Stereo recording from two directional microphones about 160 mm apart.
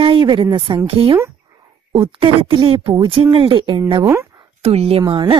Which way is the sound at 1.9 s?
35° right (ahead or behind).